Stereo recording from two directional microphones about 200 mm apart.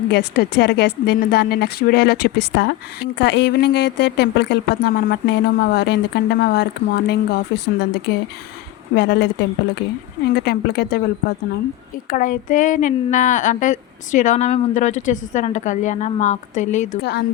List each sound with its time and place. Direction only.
0.1 s a woman's voice: 55° left (ahead or behind)
10.3 s speech: 55° left (ahead or behind)
12.1 s speech: 40° left (ahead or behind)
17.0 s a woman's voice: 55° left (ahead or behind)